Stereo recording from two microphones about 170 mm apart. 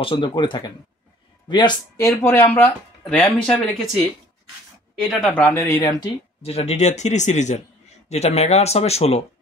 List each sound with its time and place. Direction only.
0.0 s speech: 30° left (ahead or behind); by 4.0 s centre (ahead or behind)
5.0 s speech: 5° left (ahead or behind)
5.4 s speech: 15° left (ahead or behind)
6.4 s speech: 35° left (ahead or behind)